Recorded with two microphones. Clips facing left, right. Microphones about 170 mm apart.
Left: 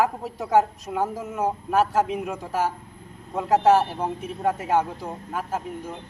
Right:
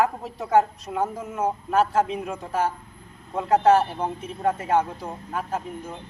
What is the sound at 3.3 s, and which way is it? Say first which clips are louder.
A man's voice: even; 5° left (ahead or behind).